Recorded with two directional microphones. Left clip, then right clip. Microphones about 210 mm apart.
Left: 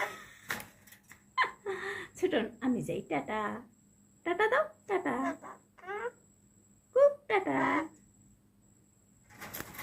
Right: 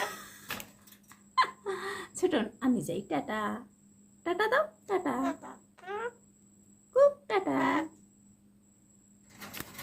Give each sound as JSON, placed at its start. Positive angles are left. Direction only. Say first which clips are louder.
{"t": 1.4, "sound": "speech", "louder": "right 3 dB", "side_deg": -15}
{"t": 5.2, "sound": "a sound", "louder": "right 2 dB", "side_deg": -20}
{"t": 7.0, "sound": "speech", "louder": "right 1 dB", "side_deg": -10}